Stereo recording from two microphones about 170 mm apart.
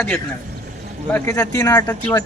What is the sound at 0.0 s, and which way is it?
Speech, 5° left (ahead or behind).